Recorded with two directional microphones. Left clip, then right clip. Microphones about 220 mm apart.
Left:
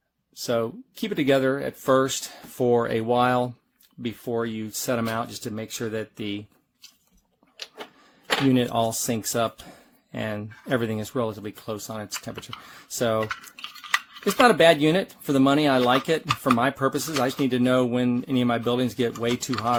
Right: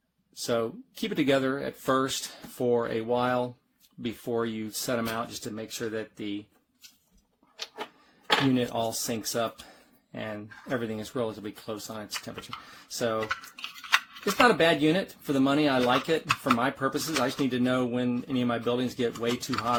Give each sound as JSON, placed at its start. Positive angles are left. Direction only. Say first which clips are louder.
{"t": 0.3, "sound": "speech", "louder": "left 3 dB", "side_deg": 20}
{"t": 4.0, "sound": "speech", "louder": "left 2 dB", "side_deg": 20}
{"t": 8.5, "sound": "speech", "louder": "left 5 dB", "side_deg": 35}
{"t": 14.4, "sound": "speech", "louder": "left 5 dB", "side_deg": 30}